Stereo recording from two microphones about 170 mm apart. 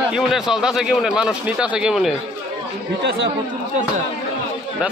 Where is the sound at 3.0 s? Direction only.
85° right.